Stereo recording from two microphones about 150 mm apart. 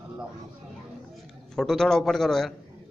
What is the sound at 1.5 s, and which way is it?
A man's voice, 5° left (ahead or behind).